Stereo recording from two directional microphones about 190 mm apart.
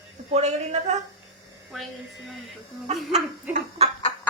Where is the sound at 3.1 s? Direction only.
35° right (ahead or behind).